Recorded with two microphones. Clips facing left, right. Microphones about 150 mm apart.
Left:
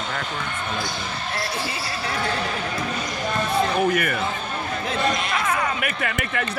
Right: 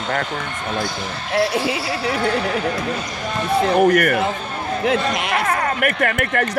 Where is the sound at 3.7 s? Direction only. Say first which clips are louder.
Right 7 dB; 60° right (ahead or behind).